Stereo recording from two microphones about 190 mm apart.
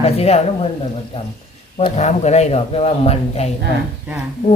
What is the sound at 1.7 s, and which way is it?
Speech, 35° left (ahead or behind).